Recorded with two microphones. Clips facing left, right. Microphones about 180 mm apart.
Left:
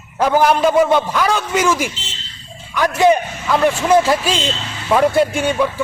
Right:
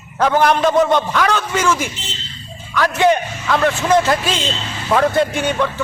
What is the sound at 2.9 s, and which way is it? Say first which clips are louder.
A man's voice: left 2 dB; 5° left (ahead or behind).